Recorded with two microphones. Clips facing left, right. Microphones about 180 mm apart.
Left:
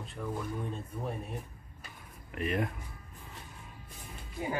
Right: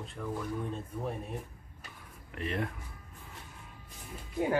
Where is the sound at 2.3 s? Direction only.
10° left (ahead or behind).